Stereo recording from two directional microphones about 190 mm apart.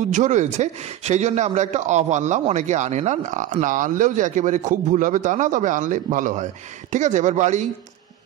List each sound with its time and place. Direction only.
0.1 s speech: 40° right (ahead or behind)